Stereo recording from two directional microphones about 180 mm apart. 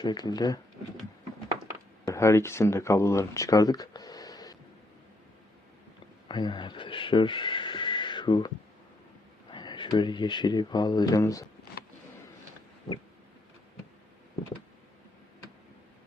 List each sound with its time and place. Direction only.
0.0 s speech: 25° left (ahead or behind)
2.0 s speech: 15° left (ahead or behind)
6.2 s speech: 25° left (ahead or behind)